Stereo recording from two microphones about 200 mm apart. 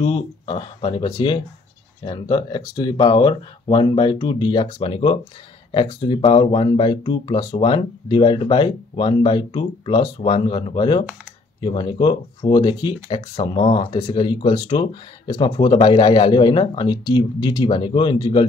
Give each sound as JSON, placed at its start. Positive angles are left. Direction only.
{"t": 0.0, "sound": "speech", "side_deg": 25}